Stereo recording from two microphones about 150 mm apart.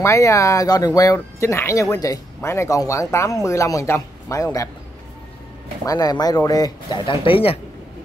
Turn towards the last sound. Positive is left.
turn(degrees=40)  # may be behind; listen again after turning